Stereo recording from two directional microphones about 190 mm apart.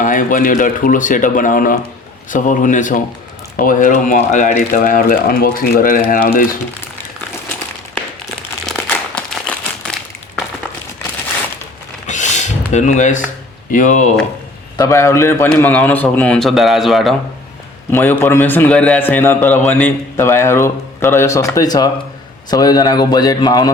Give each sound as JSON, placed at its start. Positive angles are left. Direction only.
{"t": 0.0, "sound": "speech", "side_deg": 45}
{"t": 8.6, "sound": "crumpling", "side_deg": 5}
{"t": 12.0, "sound": "a sound", "side_deg": 40}
{"t": 13.7, "sound": "speech", "side_deg": 40}
{"t": 14.8, "sound": "a man's voice", "side_deg": 15}
{"t": 17.9, "sound": "a man's voice", "side_deg": 10}